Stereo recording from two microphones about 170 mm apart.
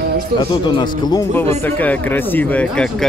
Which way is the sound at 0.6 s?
25° left (ahead or behind).